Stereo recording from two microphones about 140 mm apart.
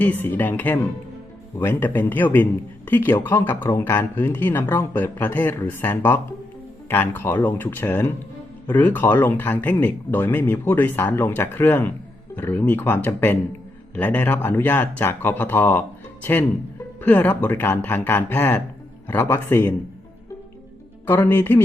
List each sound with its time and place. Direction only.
0.0 s speech: 10° left (ahead or behind)
21.1 s speech: 15° left (ahead or behind)